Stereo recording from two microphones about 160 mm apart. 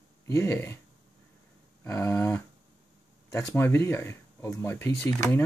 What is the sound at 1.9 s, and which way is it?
Speech, 20° left (ahead or behind).